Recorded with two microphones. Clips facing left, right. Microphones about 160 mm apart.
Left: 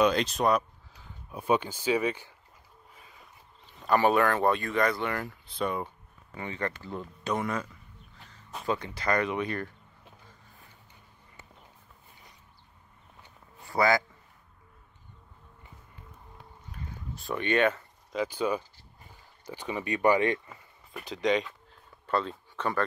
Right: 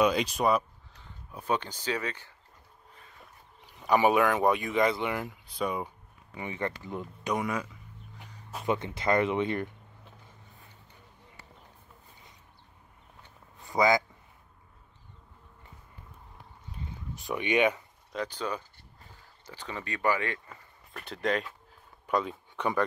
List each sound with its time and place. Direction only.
0.0 s speech: 10° right (ahead or behind); by 2.3 s 10° left (ahead or behind)
2.9 s a sound: 5° left (ahead or behind)
3.6 s speech: 10° right (ahead or behind)
4.5 s speech: 15° right (ahead or behind)
5.2 s speech: 5° right (ahead or behind)
8.2 s a sound: 15° right (ahead or behind)
8.6 s speech: 25° right (ahead or behind)
13.7 s a man's voice: 20° right (ahead or behind)
16.7 s a sound: 15° right (ahead or behind)
18.1 s speech: 5° left (ahead or behind)
20.4 s speech: centre (ahead or behind); by 22.8 s 15° right (ahead or behind)